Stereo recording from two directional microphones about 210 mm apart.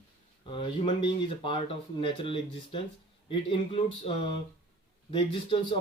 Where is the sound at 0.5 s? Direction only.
25° left (ahead or behind).